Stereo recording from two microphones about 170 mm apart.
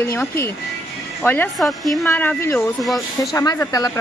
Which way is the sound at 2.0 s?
10° left (ahead or behind).